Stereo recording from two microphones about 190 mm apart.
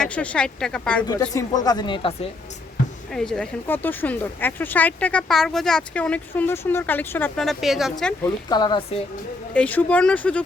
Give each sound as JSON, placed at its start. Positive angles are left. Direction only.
{"t": 0.0, "sound": "speech", "side_deg": 5}
{"t": 1.3, "sound": "speech", "side_deg": 20}
{"t": 3.1, "sound": "speech", "side_deg": 5}
{"t": 8.4, "sound": "speech", "side_deg": 20}
{"t": 9.5, "sound": "speech", "side_deg": 10}